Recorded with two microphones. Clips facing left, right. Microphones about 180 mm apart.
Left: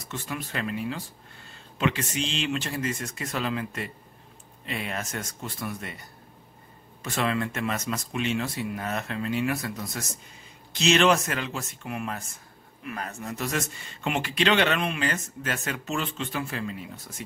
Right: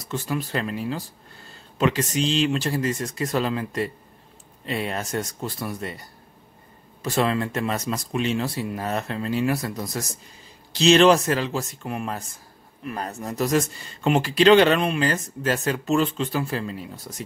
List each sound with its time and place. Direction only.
0.1 s speech: 35° right (ahead or behind)